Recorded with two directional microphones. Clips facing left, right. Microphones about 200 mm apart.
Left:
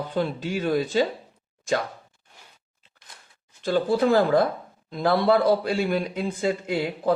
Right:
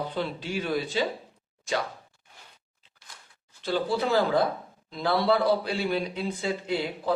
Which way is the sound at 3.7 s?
50° left (ahead or behind).